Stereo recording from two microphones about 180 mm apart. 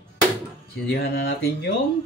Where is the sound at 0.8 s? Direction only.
60° left (ahead or behind).